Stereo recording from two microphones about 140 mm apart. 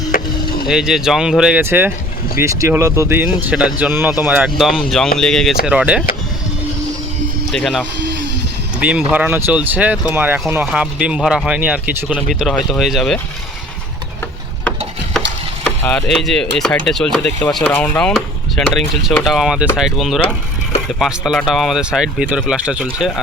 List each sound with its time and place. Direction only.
0.1 s chop: 75° left (ahead or behind)
0.7 s speech: 5° right (ahead or behind)
5.6 s speech: 10° right (ahead or behind)
7.5 s speech: 5° left (ahead or behind)
8.8 s speech: 10° right (ahead or behind)
15.6 s speech: 5° left (ahead or behind)